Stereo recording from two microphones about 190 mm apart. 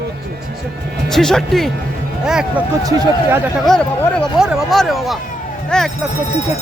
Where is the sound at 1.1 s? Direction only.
Centre (ahead or behind).